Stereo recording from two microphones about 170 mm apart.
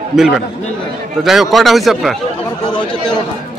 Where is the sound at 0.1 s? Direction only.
Centre (ahead or behind).